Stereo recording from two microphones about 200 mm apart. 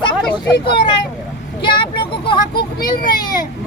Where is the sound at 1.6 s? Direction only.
25° left (ahead or behind).